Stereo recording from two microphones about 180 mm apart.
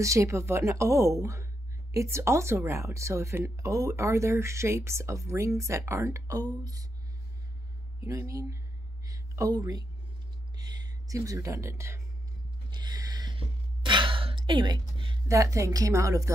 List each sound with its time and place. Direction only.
0.0 s speech: 15° right (ahead or behind)
8.0 s speech: 15° right (ahead or behind)
9.0 s a sound: 20° right (ahead or behind)
12.7 s gasp: 20° right (ahead or behind)